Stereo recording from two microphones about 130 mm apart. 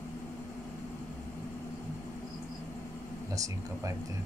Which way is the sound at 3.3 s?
25° right (ahead or behind).